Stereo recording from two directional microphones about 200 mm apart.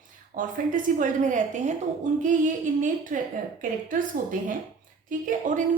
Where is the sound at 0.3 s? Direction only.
40° right (ahead or behind).